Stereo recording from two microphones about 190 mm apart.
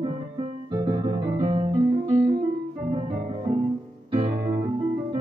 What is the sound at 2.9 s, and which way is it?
Organ, 25° right (ahead or behind).